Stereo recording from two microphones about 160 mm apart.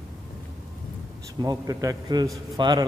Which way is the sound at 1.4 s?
25° right (ahead or behind).